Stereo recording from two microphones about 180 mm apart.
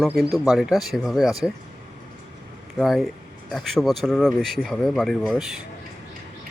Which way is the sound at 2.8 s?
Centre (ahead or behind).